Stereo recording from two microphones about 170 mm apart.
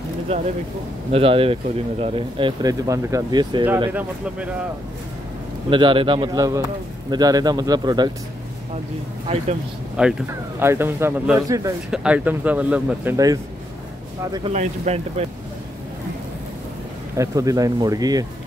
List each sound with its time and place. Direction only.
0.3 s speech: 35° right (ahead or behind)
5.7 s speech: 30° right (ahead or behind)
10.0 s speech: 5° right (ahead or behind)
11.9 s speech: 5° right (ahead or behind)
14.5 s speech: 40° right (ahead or behind)
17.2 s speech: 20° right (ahead or behind)